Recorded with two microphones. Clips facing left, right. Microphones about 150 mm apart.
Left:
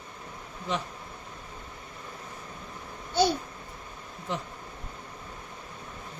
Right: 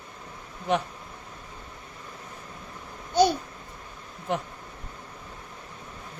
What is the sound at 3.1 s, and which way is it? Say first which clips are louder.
Babbling: right 4 dB; 15° right (ahead or behind).